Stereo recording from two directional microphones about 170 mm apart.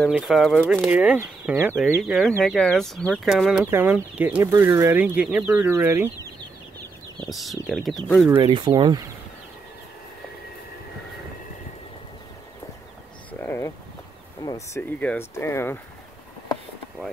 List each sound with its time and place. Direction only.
0.1 s speech: 5° right (ahead or behind)
7.2 s speech: centre (ahead or behind)
8.4 s speech: 25° right (ahead or behind)
13.3 s a sound: 10° left (ahead or behind)
14.4 s speech: 20° left (ahead or behind)
14.8 s speech: 10° left (ahead or behind)